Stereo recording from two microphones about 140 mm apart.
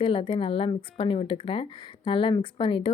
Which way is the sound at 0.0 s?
40° left (ahead or behind).